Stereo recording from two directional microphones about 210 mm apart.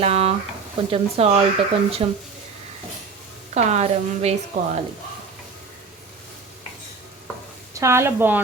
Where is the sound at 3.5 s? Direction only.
30° right (ahead or behind).